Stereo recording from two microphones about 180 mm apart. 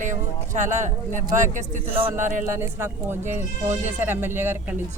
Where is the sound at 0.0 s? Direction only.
45° right (ahead or behind).